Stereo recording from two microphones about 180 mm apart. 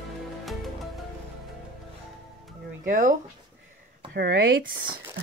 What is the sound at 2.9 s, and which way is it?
Speech, 45° right (ahead or behind).